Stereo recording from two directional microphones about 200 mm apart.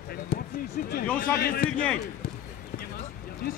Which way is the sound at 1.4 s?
50° left (ahead or behind).